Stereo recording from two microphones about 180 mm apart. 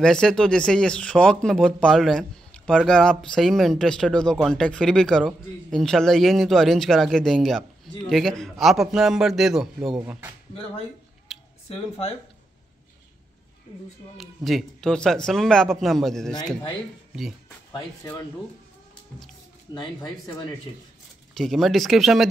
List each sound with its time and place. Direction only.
0.0 s speech: 5° left (ahead or behind)
11.3 s a sound: centre (ahead or behind)
14.1 s speech: centre (ahead or behind)
19.7 s speech: 25° left (ahead or behind)
21.4 s speech: centre (ahead or behind)